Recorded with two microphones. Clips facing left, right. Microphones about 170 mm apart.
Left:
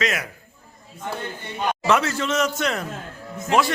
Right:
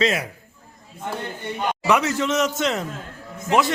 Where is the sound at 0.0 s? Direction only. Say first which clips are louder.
Right 4 dB; 30° right (ahead or behind).